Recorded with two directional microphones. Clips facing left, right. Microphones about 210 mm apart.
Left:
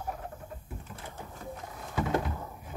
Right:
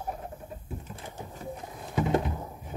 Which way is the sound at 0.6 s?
20° right (ahead or behind).